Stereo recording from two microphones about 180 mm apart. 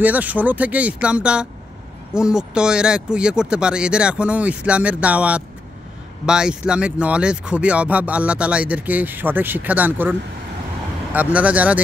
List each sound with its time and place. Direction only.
0.0 s speech: 10° right (ahead or behind)
11.1 s speech: 10° right (ahead or behind)